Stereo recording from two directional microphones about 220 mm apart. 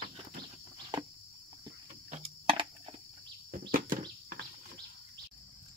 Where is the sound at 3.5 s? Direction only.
40° right (ahead or behind).